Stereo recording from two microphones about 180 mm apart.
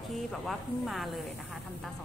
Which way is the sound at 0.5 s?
Centre (ahead or behind).